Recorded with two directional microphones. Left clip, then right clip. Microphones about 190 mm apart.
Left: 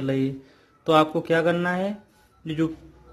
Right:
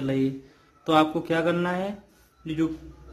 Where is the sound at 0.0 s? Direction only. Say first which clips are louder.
Left 1 dB; 25° left (ahead or behind).